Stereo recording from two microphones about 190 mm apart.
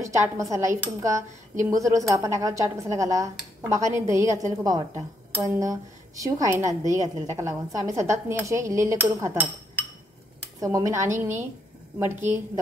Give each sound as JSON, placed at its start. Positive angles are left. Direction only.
{"t": 0.0, "sound": "speech", "side_deg": -15}
{"t": 10.6, "sound": "speech", "side_deg": -15}